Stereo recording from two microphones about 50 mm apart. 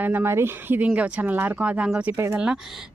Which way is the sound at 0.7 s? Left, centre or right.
Right.